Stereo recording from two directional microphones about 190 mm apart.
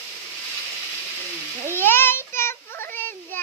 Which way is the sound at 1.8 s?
10° left (ahead or behind).